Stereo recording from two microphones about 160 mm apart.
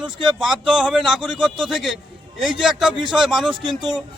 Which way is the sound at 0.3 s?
5° right (ahead or behind).